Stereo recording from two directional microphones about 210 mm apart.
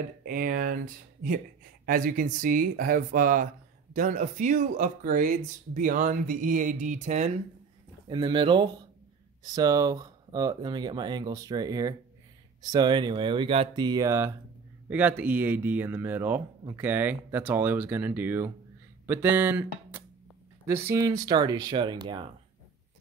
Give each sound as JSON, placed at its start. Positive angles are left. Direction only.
{"t": 0.2, "sound": "speech", "side_deg": -40}
{"t": 8.1, "sound": "speech", "side_deg": -20}